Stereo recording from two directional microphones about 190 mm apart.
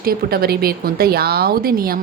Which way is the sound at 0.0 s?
55° right (ahead or behind).